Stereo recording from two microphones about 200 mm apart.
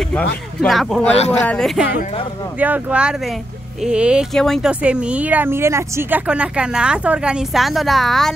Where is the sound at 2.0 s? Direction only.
30° left (ahead or behind).